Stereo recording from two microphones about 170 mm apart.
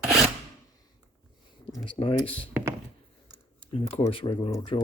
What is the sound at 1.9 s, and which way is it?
Speech, 30° left (ahead or behind).